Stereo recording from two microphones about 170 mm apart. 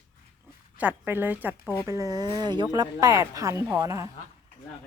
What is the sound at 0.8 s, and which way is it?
A woman's voice, 10° right (ahead or behind).